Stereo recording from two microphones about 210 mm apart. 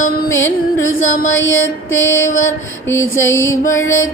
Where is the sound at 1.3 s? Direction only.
65° left (ahead or behind).